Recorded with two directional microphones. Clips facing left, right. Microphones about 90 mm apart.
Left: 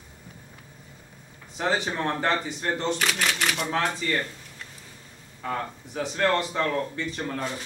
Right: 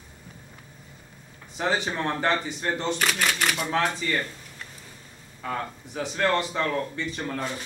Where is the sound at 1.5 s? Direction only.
Centre (ahead or behind).